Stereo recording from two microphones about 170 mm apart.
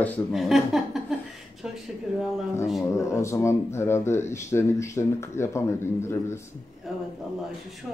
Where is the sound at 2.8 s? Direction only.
15° left (ahead or behind).